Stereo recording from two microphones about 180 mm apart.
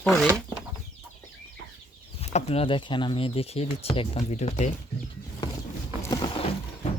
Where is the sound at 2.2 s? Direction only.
35° left (ahead or behind).